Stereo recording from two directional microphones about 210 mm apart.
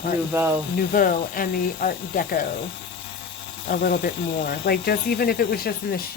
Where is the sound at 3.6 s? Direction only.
45° left (ahead or behind).